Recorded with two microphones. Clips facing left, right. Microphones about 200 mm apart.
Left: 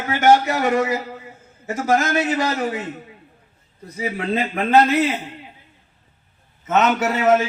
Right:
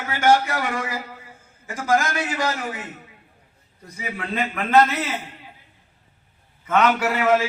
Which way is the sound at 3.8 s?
30° left (ahead or behind).